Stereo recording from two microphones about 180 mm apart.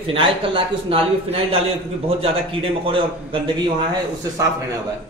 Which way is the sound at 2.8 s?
30° right (ahead or behind).